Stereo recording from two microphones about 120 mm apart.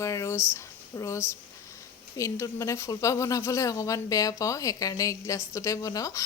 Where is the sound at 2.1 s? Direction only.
25° left (ahead or behind).